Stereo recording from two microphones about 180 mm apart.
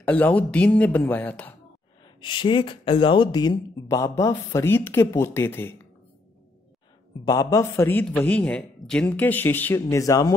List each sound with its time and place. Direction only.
0.0 s speech: 10° left (ahead or behind)
2.2 s speech: 25° left (ahead or behind)
7.2 s speech: 20° left (ahead or behind)